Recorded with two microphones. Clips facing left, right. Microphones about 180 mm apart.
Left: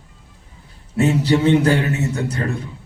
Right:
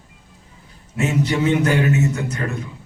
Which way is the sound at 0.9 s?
35° left (ahead or behind).